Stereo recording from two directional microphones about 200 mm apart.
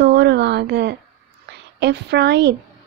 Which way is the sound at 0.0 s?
55° right (ahead or behind).